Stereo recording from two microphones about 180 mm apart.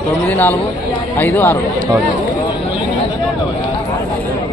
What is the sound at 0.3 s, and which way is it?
Speech, 10° left (ahead or behind).